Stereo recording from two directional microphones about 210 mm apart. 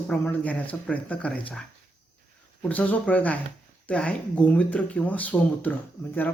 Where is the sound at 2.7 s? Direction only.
5° left (ahead or behind).